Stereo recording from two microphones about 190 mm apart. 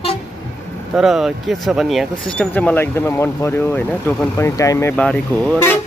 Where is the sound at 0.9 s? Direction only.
Centre (ahead or behind).